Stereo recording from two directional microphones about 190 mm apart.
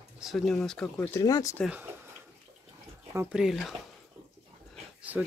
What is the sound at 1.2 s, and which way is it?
Speech, 20° left (ahead or behind).